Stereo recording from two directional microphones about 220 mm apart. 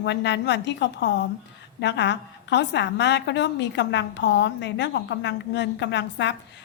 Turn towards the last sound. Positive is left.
turn(degrees=55)  # may be behind; listen again after turning